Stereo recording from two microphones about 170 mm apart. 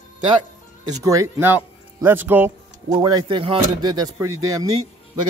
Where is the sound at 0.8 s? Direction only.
20° right (ahead or behind).